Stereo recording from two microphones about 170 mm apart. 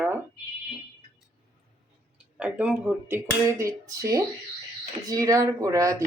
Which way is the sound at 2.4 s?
5° right (ahead or behind).